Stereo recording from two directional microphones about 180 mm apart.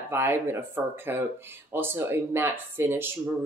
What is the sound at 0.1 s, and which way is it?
Speech, 10° right (ahead or behind).